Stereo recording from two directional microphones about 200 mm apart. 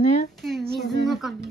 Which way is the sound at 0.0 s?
35° left (ahead or behind).